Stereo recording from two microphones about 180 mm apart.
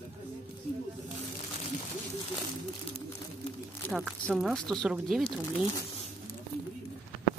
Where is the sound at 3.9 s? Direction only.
Centre (ahead or behind).